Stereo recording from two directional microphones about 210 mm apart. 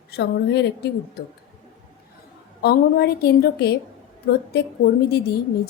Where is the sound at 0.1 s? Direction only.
50° left (ahead or behind).